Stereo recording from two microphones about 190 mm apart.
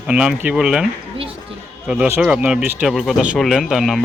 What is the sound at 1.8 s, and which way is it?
Speech, 5° right (ahead or behind).